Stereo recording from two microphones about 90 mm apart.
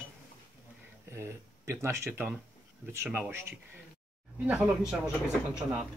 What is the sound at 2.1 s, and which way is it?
Speech, 20° right (ahead or behind).